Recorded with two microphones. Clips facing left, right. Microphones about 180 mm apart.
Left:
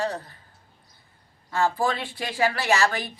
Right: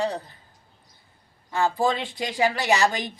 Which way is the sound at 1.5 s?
15° right (ahead or behind).